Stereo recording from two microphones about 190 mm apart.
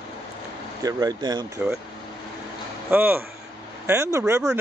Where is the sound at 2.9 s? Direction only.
10° right (ahead or behind).